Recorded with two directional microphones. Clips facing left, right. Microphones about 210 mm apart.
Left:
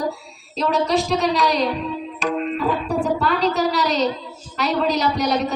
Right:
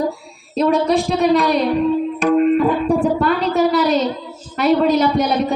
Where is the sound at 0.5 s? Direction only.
55° right (ahead or behind).